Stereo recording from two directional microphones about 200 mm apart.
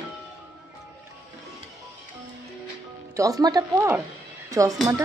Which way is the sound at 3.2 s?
20° right (ahead or behind).